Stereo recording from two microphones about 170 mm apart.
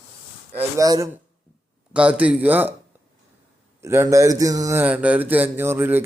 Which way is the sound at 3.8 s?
15° right (ahead or behind).